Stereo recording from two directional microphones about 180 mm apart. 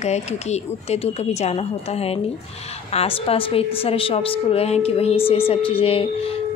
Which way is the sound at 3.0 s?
30° left (ahead or behind).